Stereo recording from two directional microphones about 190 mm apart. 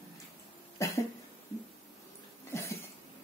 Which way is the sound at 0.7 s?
15° left (ahead or behind).